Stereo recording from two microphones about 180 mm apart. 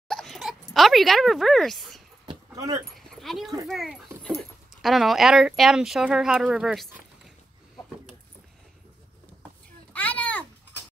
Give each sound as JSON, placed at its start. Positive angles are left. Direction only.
{"t": 0.1, "sound": "dog", "side_deg": 0}
{"t": 2.2, "sound": "keys jangling", "side_deg": -20}
{"t": 3.1, "sound": "dog", "side_deg": 0}
{"t": 3.6, "sound": "speech", "side_deg": 0}
{"t": 9.9, "sound": "a sound", "side_deg": 10}